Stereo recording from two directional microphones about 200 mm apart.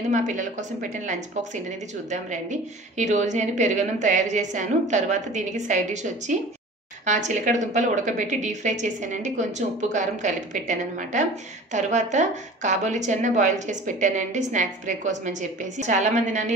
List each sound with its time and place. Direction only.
0.1 s a woman's voice: 40° right (ahead or behind)